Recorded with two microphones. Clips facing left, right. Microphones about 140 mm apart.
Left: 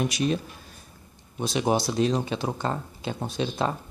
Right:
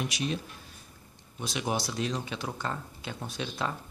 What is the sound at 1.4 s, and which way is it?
Speech, 30° left (ahead or behind).